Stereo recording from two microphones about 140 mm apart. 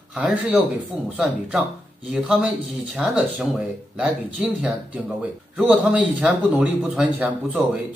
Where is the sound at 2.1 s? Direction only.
5° right (ahead or behind).